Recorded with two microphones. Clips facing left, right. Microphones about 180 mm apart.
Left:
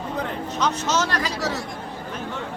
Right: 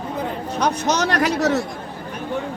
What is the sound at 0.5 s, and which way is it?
Speech, 10° right (ahead or behind).